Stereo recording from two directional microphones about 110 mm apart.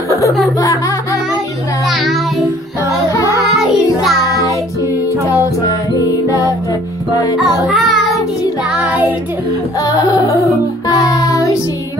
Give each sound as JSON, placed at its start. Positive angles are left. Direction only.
{"t": 0.6, "sound": "music", "side_deg": 30}
{"t": 1.9, "sound": "music", "side_deg": 0}
{"t": 4.8, "sound": "music", "side_deg": 30}
{"t": 7.6, "sound": "music", "side_deg": 0}
{"t": 8.6, "sound": "child singing", "side_deg": -5}
{"t": 9.8, "sound": "music", "side_deg": 30}